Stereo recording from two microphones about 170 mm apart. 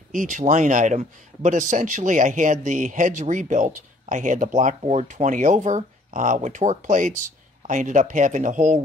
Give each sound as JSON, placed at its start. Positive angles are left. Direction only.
{"t": 0.1, "sound": "a man's voice", "side_deg": -50}